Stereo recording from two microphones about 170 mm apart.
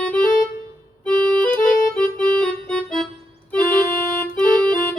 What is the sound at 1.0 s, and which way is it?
Accordion, 5° left (ahead or behind).